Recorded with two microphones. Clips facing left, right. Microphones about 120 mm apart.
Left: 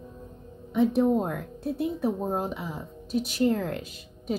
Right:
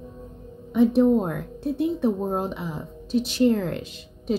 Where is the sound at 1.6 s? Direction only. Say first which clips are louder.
Right 5 dB; 25° right (ahead or behind).